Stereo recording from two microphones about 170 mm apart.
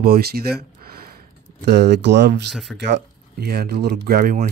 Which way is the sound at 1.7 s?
85° right.